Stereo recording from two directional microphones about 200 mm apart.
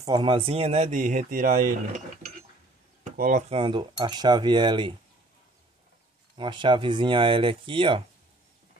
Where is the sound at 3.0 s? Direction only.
40° right (ahead or behind); by 4.9 s 25° right (ahead or behind).